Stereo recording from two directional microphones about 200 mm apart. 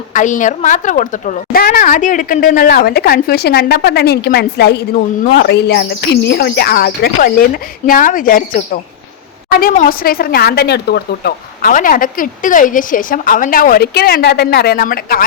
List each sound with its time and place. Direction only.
0.1 s speech: 40° left (ahead or behind)